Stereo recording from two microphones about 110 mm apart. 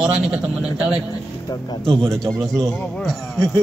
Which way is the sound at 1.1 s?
40° left (ahead or behind).